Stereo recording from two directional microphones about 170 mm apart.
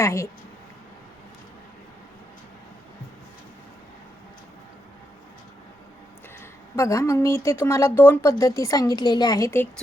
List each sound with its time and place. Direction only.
0.0 s speech: 15° left (ahead or behind)
6.7 s speech: 15° left (ahead or behind)